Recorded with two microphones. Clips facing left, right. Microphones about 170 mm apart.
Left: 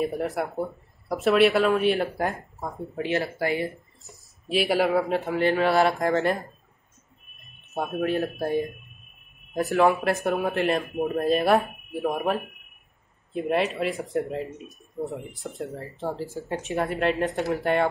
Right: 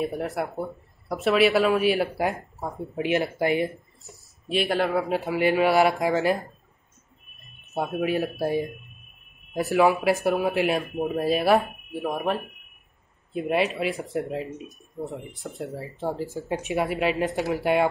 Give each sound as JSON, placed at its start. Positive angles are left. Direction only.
{"t": 0.0, "sound": "speech", "side_deg": 0}
{"t": 3.0, "sound": "speech", "side_deg": -15}
{"t": 4.5, "sound": "speech", "side_deg": 0}
{"t": 7.4, "sound": "speech", "side_deg": 0}
{"t": 16.1, "sound": "speech", "side_deg": -15}